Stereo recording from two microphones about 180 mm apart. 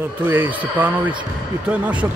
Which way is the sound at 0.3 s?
10° right (ahead or behind).